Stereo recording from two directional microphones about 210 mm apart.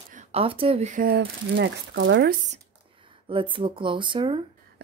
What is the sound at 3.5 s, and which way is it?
Speech, 25° right (ahead or behind).